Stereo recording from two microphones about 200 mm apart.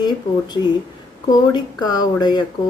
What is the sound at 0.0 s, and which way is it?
Speech, 20° left (ahead or behind).